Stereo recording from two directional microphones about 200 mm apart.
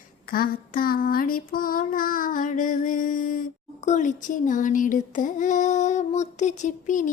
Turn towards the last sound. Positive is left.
turn(degrees=40)  # may be behind; listen again after turning